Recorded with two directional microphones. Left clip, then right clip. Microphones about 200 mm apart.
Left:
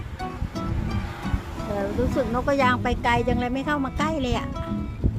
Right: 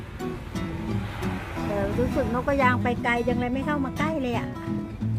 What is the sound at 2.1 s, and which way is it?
Speech, centre (ahead or behind).